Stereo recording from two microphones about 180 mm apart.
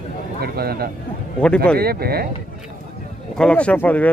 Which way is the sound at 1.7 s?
60° right (ahead or behind).